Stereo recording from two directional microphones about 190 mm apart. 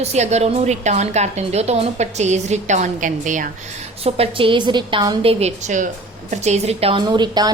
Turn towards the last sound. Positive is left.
turn(degrees=-20)  # may be behind; listen again after turning